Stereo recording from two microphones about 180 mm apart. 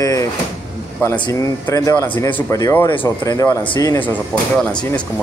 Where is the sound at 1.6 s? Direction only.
15° left (ahead or behind).